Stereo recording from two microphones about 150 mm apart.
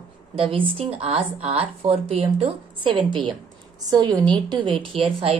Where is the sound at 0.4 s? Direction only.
35° right (ahead or behind).